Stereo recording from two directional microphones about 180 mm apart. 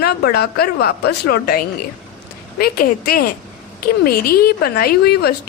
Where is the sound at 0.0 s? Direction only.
60° left (ahead or behind).